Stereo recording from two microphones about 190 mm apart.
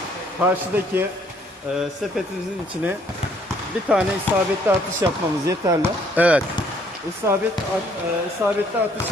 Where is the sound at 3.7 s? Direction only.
5° right (ahead or behind).